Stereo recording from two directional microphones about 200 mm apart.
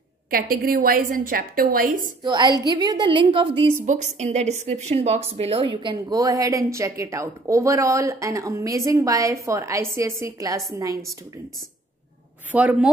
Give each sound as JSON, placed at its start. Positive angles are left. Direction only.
{"t": 0.3, "sound": "a woman's voice", "side_deg": -45}
{"t": 2.2, "sound": "a woman's voice", "side_deg": -20}
{"t": 3.8, "sound": "speech", "side_deg": -35}
{"t": 12.4, "sound": "speech", "side_deg": -5}